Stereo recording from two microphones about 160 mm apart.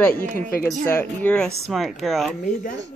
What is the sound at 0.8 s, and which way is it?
A woman's voice, 10° left (ahead or behind).